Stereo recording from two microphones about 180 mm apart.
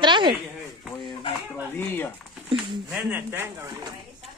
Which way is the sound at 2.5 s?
5° right (ahead or behind).